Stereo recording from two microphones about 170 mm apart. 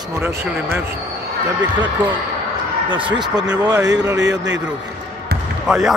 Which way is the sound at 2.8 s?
30° right (ahead or behind).